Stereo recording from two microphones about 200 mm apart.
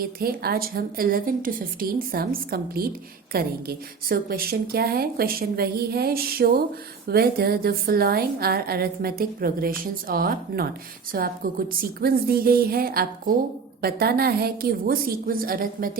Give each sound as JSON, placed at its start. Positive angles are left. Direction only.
{"t": 0.0, "sound": "a woman's voice", "side_deg": -50}